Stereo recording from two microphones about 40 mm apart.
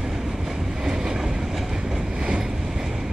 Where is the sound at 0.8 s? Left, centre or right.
Centre.